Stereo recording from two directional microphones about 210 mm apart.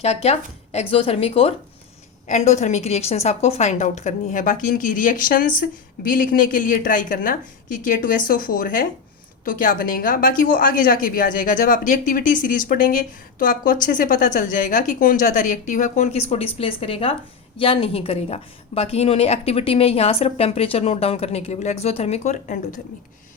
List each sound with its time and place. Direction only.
0.0 s a woman's voice: 30° left (ahead or behind)